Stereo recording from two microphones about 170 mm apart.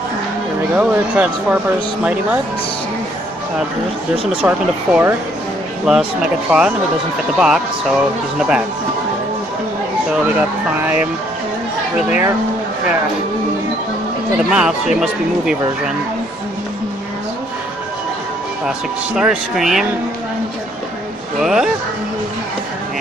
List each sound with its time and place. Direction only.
0.7 s speech: 10° right (ahead or behind)
4.2 s speech: 35° right (ahead or behind)
4.5 s speech: 10° right (ahead or behind)
14.5 s speech: 5° right (ahead or behind)
19.1 s speech: 5° right (ahead or behind)
21.4 s speech: centre (ahead or behind)